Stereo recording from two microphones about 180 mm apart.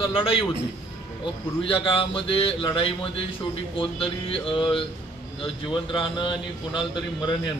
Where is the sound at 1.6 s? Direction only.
30° left (ahead or behind).